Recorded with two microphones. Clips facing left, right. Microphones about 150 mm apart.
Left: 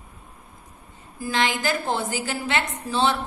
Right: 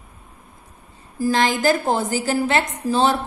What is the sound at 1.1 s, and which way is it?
A woman's voice, 40° right (ahead or behind).